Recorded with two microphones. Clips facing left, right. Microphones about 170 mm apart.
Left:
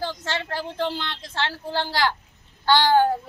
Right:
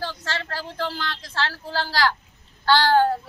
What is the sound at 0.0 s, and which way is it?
A woman's voice, 20° left (ahead or behind).